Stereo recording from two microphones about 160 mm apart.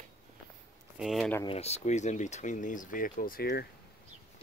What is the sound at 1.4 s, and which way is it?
Speech, 40° left (ahead or behind).